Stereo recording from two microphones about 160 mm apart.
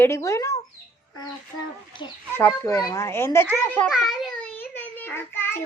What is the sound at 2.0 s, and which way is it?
A child's voice, 30° left (ahead or behind).